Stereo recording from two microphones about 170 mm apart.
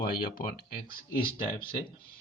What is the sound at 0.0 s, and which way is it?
Speech, 60° left (ahead or behind).